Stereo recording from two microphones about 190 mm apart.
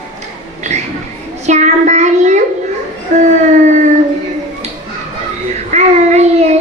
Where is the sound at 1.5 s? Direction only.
40° right (ahead or behind).